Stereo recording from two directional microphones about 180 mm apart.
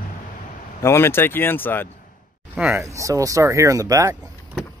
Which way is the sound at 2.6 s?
10° right (ahead or behind).